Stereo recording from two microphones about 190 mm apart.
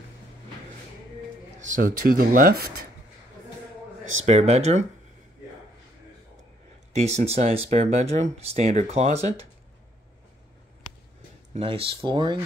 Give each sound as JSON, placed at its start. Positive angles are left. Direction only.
{"t": 1.6, "sound": "speech", "side_deg": -45}
{"t": 4.4, "sound": "speech", "side_deg": -35}
{"t": 6.9, "sound": "speech", "side_deg": -35}
{"t": 11.5, "sound": "speech", "side_deg": -30}